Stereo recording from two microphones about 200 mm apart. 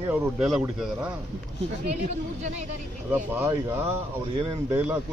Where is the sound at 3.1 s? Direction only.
10° right (ahead or behind).